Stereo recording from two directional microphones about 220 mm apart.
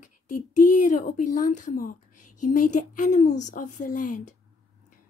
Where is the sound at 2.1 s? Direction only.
90° left.